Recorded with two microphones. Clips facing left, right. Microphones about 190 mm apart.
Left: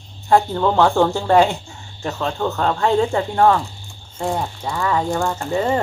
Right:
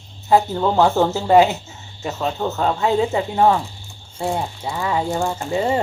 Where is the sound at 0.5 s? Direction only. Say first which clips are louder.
Even; 15° right (ahead or behind).